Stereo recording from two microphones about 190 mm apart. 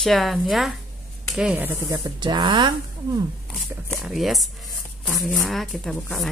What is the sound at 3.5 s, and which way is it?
Speech, centre (ahead or behind).